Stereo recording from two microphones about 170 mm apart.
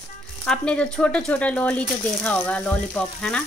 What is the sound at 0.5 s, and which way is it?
Speech, 5° left (ahead or behind).